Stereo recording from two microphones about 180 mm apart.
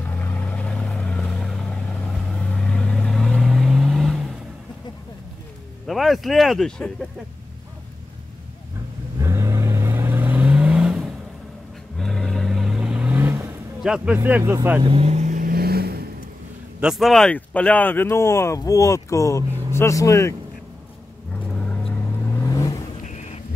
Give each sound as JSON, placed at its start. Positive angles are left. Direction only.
{"t": 0.0, "sound": "vehicle", "side_deg": 10}
{"t": 5.9, "sound": "speech", "side_deg": 0}
{"t": 9.2, "sound": "vehicle", "side_deg": -15}
{"t": 13.8, "sound": "speech", "side_deg": -5}
{"t": 14.8, "sound": "vehicle", "side_deg": -30}
{"t": 16.8, "sound": "speech", "side_deg": 0}
{"t": 21.6, "sound": "vehicle", "side_deg": 5}
{"t": 22.4, "sound": "vehicle", "side_deg": 20}
{"t": 23.0, "sound": "thunder", "side_deg": 40}